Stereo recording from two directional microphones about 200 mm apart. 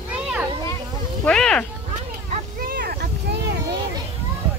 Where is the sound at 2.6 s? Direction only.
50° right (ahead or behind).